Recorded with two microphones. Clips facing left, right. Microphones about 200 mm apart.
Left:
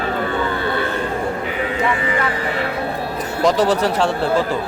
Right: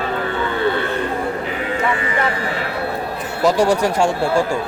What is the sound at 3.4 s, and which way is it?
Speech, 10° right (ahead or behind).